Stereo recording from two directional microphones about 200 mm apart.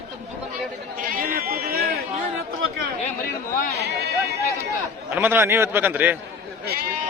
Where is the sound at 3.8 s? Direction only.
55° right (ahead or behind).